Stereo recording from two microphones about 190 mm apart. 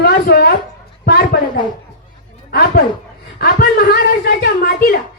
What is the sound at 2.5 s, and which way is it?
A woman's voice, 55° left (ahead or behind).